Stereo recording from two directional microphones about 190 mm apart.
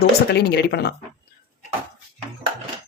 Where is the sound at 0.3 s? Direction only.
60° left (ahead or behind).